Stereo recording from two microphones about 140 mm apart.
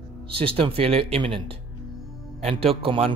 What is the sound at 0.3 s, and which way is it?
Speech, 40° right (ahead or behind).